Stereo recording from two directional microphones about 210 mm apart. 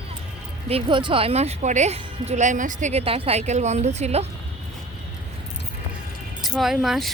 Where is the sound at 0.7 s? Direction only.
25° right (ahead or behind).